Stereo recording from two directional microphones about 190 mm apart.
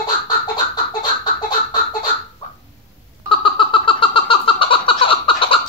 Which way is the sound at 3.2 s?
25° left (ahead or behind).